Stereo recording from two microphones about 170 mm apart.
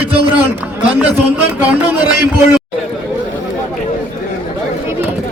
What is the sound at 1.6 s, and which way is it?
Speech, 10° right (ahead or behind).